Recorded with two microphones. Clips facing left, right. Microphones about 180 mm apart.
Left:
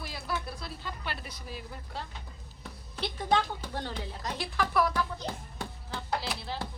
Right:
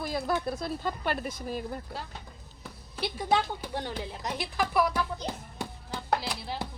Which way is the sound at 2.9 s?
10° right (ahead or behind).